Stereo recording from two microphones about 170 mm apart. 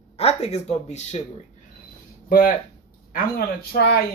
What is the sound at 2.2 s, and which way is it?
Speech, 55° left (ahead or behind).